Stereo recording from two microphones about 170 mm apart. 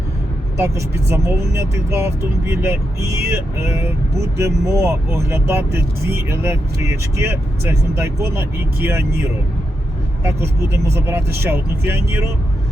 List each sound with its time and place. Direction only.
0.5 s speech: 15° right (ahead or behind)
10.2 s speech: 15° right (ahead or behind)